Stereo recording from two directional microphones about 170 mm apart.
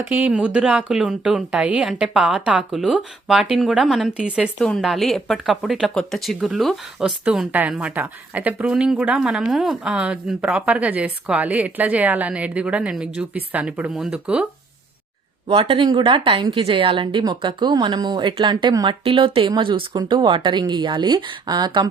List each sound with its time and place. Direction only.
0.0 s speech: 10° right (ahead or behind)
15.4 s a woman's voice: 35° right (ahead or behind)